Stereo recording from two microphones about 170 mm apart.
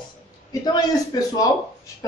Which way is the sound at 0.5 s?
20° left (ahead or behind).